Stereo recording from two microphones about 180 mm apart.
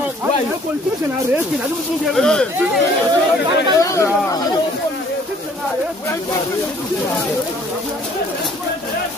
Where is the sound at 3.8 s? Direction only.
15° left (ahead or behind).